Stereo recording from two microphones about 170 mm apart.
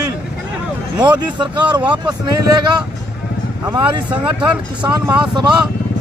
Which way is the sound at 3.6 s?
25° right (ahead or behind).